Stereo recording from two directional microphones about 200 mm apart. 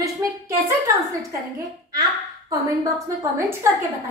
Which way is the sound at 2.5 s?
15° right (ahead or behind).